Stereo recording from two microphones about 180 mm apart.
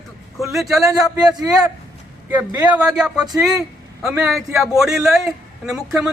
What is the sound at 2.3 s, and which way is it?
Speech, 10° right (ahead or behind).